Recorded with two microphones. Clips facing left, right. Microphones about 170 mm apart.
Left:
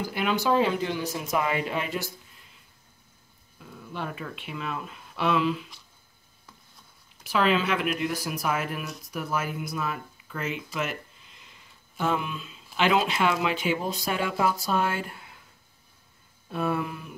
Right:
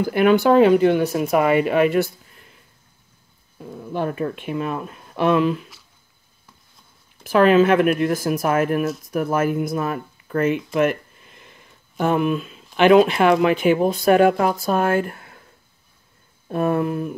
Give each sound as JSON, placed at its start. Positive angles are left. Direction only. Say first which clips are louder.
{"t": 0.0, "sound": "speech", "louder": "right 11 dB", "side_deg": -55}
{"t": 3.5, "sound": "speech", "louder": "right 11 dB", "side_deg": -40}
{"t": 7.2, "sound": "speech", "louder": "right 10 dB", "side_deg": -50}
{"t": 16.4, "sound": "speech", "louder": "right 8 dB", "side_deg": -50}